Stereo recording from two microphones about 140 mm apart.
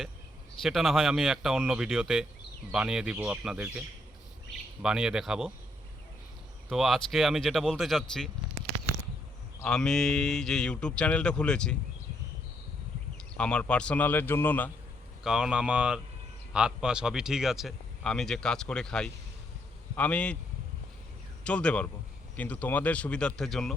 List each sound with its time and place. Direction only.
0.6 s speech: centre (ahead or behind)
6.7 s speech: centre (ahead or behind)
9.6 s speech: 5° left (ahead or behind)
13.3 s speech: 5° left (ahead or behind)
15.2 s speech: 5° right (ahead or behind)
21.4 s speech: 5° left (ahead or behind)